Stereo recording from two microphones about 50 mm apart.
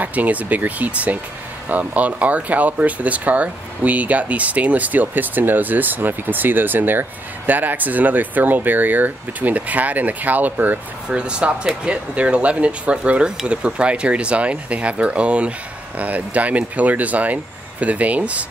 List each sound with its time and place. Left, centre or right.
0.0 s speech: right
11.1 s speech: centre